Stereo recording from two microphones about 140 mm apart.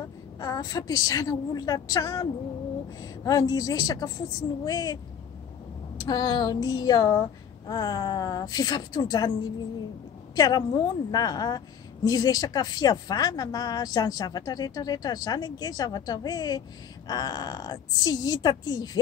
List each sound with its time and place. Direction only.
0.4 s a woman's voice: 25° left (ahead or behind)
6.0 s a woman's voice: 30° left (ahead or behind)
10.3 s a woman's voice: 25° left (ahead or behind)